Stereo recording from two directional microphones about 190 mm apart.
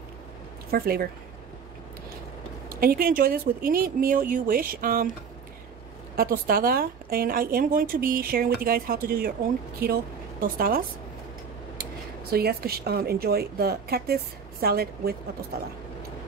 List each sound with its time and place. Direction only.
0.7 s a woman's voice: 55° right (ahead or behind)
2.7 s a woman's voice: 50° right (ahead or behind)
6.1 s a woman's voice: 50° right (ahead or behind)
10.4 s a woman's voice: 50° right (ahead or behind)
11.8 s a woman's voice: 55° right (ahead or behind)